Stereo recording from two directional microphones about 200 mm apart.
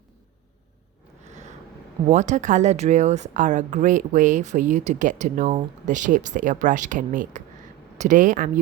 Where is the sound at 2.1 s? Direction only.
35° right (ahead or behind).